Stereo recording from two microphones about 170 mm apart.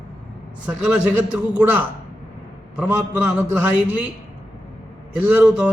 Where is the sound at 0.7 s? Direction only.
5° right (ahead or behind).